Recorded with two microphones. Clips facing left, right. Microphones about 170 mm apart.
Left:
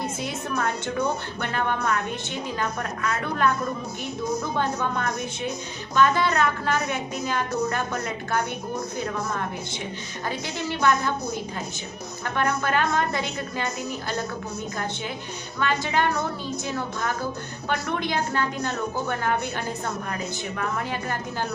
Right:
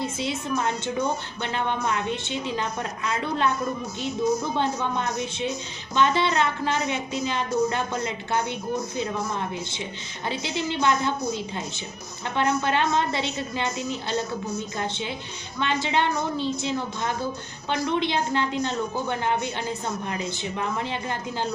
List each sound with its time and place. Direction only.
0.2 s a woman's voice: 20° right (ahead or behind)
4.5 s a woman's voice: 20° right (ahead or behind)
10.2 s a woman's voice: 20° right (ahead or behind)
12.2 s a woman's voice: 20° right (ahead or behind)
15.6 s a woman's voice: 25° right (ahead or behind)